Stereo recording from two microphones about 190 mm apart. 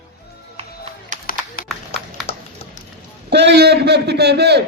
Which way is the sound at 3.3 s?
60° right (ahead or behind).